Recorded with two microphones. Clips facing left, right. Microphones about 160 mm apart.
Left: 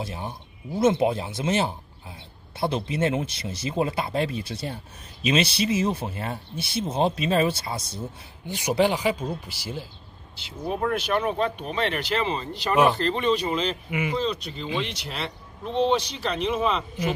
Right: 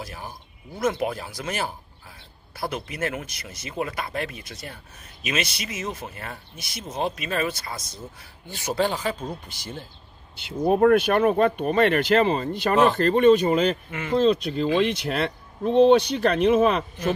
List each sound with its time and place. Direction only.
0.0 s speech: 25° left (ahead or behind)
8.5 s speech: 15° left (ahead or behind)
10.4 s speech: 55° right (ahead or behind)
13.8 s speech: 10° left (ahead or behind)
14.1 s speech: 50° right (ahead or behind)